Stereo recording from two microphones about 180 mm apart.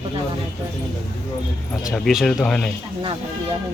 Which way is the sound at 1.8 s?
Centre (ahead or behind).